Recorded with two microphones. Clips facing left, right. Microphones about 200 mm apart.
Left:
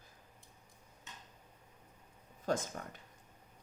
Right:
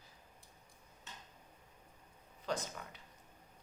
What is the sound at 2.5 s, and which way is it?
Speech, 45° left (ahead or behind).